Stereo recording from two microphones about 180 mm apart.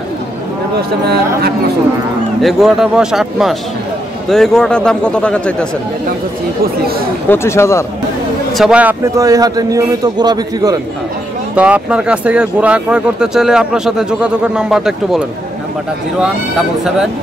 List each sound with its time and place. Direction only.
0.7 s speech: 65° right (ahead or behind)
2.4 s speech: centre (ahead or behind)
7.2 s speech: 15° left (ahead or behind)
8.5 s speech: 5° right (ahead or behind)
9.1 s a man's voice: 20° right (ahead or behind)
11.5 s speech: 5° right (ahead or behind)